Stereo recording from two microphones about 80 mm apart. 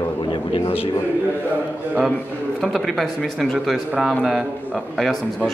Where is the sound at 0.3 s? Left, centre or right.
Left.